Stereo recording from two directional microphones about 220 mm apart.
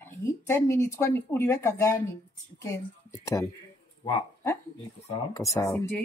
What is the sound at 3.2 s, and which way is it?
Speech, 15° left (ahead or behind).